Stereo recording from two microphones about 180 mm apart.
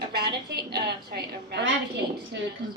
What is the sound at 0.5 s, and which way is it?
A woman's voice, 60° right (ahead or behind).